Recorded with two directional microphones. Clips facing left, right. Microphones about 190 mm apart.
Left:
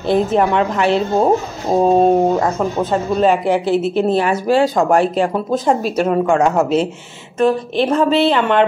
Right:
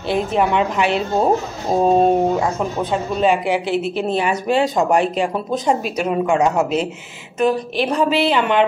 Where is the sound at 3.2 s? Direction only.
10° right (ahead or behind).